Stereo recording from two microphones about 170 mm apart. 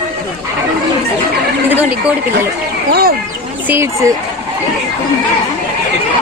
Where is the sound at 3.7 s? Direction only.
15° right (ahead or behind).